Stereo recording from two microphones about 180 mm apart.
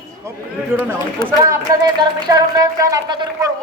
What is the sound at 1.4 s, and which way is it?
A man's voice, 20° right (ahead or behind).